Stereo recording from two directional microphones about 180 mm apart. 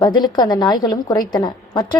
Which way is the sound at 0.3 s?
25° left (ahead or behind).